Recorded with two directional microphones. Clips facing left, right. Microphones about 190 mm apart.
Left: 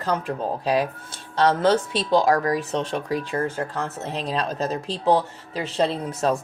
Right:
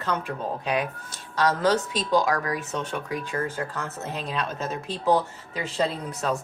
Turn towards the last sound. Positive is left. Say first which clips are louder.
# left 4 dB
turn(degrees=30)  # may be behind; listen again after turning